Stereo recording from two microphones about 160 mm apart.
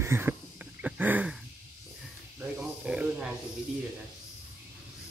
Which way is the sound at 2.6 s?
5° right (ahead or behind).